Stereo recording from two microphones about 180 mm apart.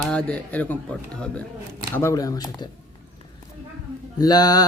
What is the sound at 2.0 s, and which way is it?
Mantra, 15° left (ahead or behind).